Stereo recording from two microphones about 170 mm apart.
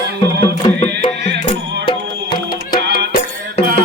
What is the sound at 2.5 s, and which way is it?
Music, 60° left (ahead or behind).